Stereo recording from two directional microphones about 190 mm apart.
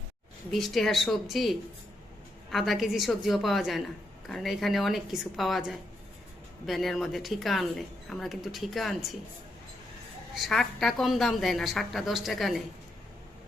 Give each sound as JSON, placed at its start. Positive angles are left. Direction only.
{"t": 0.5, "sound": "speech", "side_deg": 0}
{"t": 10.3, "sound": "speech", "side_deg": 0}